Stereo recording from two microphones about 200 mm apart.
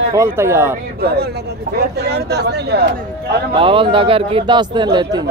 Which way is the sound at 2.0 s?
55° right (ahead or behind).